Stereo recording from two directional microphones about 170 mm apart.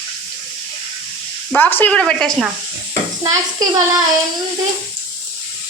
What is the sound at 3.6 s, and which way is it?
Speech, 20° right (ahead or behind).